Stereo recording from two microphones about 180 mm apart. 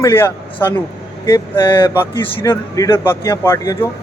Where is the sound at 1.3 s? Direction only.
25° left (ahead or behind).